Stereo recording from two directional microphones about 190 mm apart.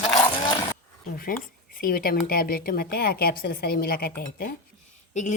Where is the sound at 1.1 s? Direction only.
50° left (ahead or behind).